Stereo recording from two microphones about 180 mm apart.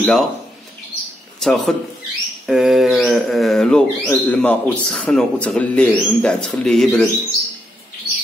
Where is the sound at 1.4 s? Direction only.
Centre (ahead or behind).